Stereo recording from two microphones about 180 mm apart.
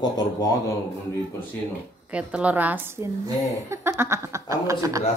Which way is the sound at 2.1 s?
5° right (ahead or behind).